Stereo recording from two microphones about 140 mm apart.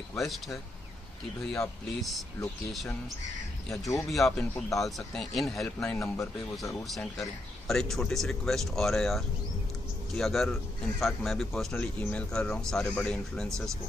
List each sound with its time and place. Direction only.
0.2 s speech: centre (ahead or behind)
4.1 s speech: centre (ahead or behind)
5.9 s speech: 20° left (ahead or behind)
6.8 s speech: centre (ahead or behind)